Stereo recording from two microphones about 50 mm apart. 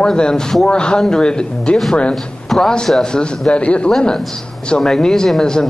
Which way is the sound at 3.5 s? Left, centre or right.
Left.